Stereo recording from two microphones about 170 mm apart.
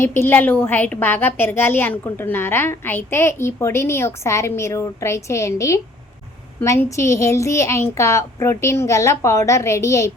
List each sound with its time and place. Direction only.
0.0 s a woman's voice: 15° left (ahead or behind)